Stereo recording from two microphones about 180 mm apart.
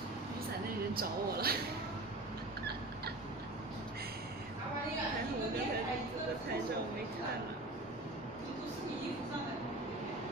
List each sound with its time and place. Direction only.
0.9 s speech: 60° right (ahead or behind)